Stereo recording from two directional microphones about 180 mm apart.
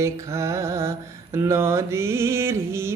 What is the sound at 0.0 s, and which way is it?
Mantra, 15° right (ahead or behind).